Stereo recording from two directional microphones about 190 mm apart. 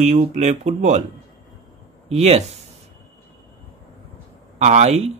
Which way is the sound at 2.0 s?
35° right (ahead or behind).